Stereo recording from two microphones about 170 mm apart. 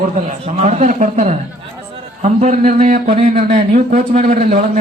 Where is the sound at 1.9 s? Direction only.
40° right (ahead or behind).